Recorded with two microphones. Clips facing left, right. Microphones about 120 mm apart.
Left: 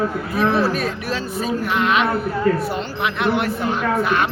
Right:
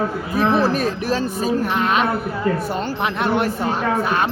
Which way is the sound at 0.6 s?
40° right (ahead or behind).